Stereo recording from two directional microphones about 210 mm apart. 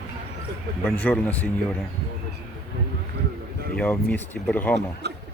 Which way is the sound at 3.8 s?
5° left (ahead or behind).